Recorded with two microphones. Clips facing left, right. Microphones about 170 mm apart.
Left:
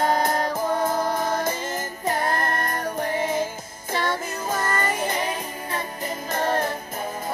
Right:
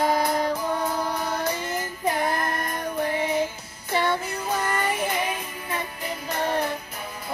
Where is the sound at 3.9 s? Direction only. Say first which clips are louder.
Right 2 dB; 40° left (ahead or behind).